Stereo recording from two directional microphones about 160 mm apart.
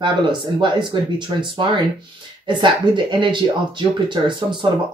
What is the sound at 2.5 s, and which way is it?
Speech, 30° right (ahead or behind).